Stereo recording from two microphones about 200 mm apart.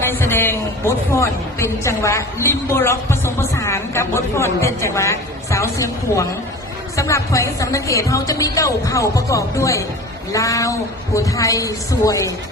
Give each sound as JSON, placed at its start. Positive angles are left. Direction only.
{"t": 0.0, "sound": "a man's voice", "side_deg": 10}